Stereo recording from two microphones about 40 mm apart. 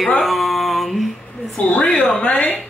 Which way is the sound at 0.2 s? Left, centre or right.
Centre.